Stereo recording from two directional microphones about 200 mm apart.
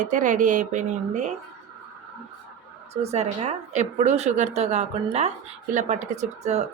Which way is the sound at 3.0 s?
35° right (ahead or behind).